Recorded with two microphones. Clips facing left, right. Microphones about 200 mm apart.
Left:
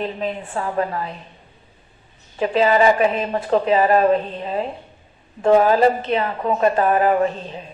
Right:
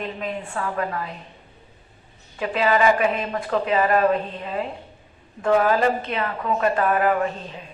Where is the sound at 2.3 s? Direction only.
30° left (ahead or behind).